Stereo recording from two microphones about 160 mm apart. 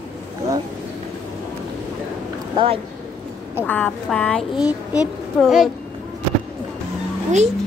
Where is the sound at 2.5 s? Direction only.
35° right (ahead or behind).